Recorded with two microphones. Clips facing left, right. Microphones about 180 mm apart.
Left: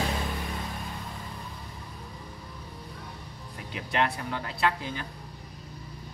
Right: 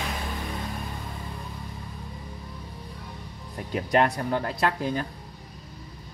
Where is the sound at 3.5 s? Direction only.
45° right (ahead or behind).